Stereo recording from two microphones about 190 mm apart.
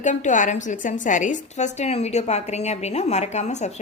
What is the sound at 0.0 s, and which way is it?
A woman's voice, 40° left (ahead or behind).